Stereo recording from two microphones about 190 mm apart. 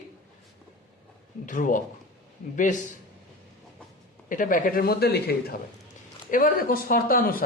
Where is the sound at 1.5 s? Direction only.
45° left (ahead or behind).